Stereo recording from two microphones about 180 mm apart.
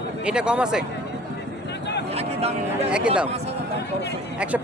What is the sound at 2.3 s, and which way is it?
Speech, 35° right (ahead or behind).